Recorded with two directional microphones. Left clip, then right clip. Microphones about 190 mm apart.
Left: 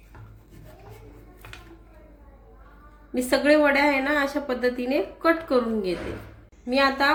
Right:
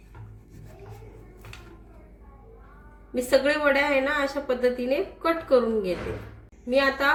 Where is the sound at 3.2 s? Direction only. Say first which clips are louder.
Left 2 dB; 35° left (ahead or behind).